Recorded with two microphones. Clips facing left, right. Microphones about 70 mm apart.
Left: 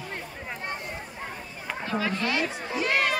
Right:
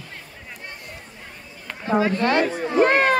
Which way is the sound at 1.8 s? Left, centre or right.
Right.